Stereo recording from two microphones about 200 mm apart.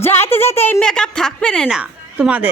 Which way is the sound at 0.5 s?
10° left (ahead or behind).